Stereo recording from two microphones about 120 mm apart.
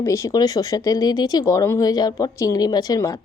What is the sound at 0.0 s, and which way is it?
A woman's voice, 25° left (ahead or behind).